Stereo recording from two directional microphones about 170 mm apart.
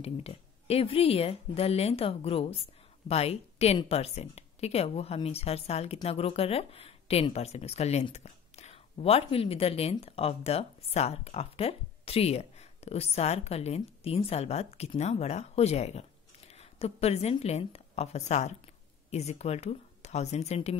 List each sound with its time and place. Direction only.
0.0 s speech: 35° left (ahead or behind)